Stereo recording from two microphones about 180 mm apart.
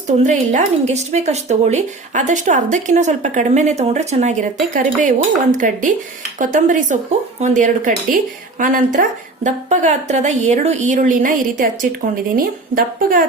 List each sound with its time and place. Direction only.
0.2 s speech: 40° right (ahead or behind)